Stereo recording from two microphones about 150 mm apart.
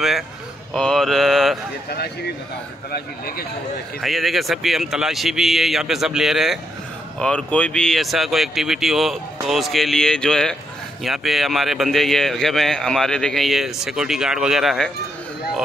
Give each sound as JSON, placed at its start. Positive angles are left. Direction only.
{"t": 0.7, "sound": "mantra", "side_deg": 5}
{"t": 2.9, "sound": "a man's voice", "side_deg": 90}
{"t": 4.0, "sound": "a man's voice", "side_deg": 0}